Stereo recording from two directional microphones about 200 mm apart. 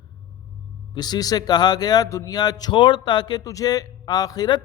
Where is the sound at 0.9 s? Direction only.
20° left (ahead or behind).